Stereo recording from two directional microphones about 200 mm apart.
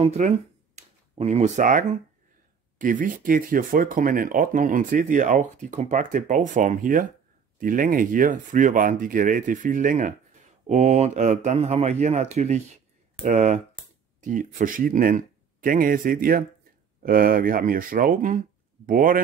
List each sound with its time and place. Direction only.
0.0 s speech: 35° right (ahead or behind)